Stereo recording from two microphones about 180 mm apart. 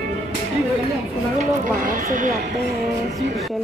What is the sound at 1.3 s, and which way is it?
Speech, 50° right (ahead or behind).